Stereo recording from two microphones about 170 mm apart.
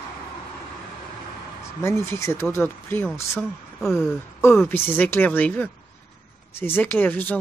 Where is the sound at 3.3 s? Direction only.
Centre (ahead or behind).